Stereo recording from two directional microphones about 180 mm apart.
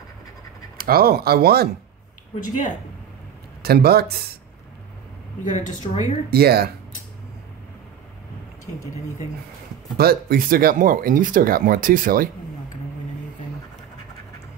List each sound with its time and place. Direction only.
0.7 s speech: 55° right (ahead or behind)
3.6 s speech: 60° right (ahead or behind)
5.4 s a woman's voice: 45° left (ahead or behind)
6.3 s speech: 60° right (ahead or behind)
9.9 s speech: 55° right (ahead or behind)